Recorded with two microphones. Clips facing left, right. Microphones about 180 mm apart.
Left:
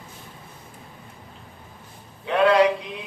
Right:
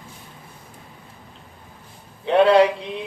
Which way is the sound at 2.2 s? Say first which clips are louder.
Right 3 dB; 30° right (ahead or behind).